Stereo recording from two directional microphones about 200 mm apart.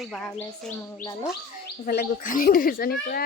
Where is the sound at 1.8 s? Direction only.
45° left (ahead or behind).